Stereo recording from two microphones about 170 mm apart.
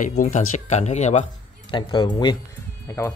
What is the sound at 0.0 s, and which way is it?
Speech, 45° left (ahead or behind).